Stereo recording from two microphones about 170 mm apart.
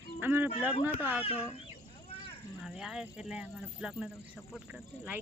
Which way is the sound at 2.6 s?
5° right (ahead or behind).